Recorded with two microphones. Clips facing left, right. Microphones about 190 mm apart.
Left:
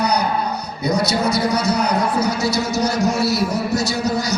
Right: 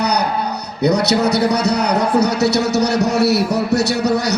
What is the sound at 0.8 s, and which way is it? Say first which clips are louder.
A man's voice: right 5 dB; 70° right (ahead or behind).